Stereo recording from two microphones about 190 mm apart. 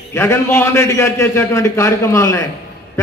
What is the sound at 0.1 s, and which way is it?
A man's voice, 15° left (ahead or behind).